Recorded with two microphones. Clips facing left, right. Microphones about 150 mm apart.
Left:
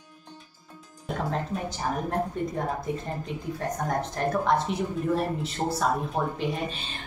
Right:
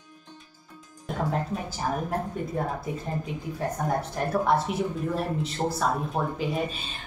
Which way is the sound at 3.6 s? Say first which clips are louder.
Right 1 dB; 10° right (ahead or behind).